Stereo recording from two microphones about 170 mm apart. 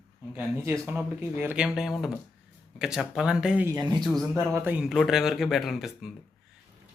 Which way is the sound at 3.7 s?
25° right (ahead or behind).